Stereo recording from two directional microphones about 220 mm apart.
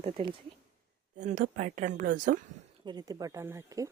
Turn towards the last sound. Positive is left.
turn(degrees=-10)  # may be behind; listen again after turning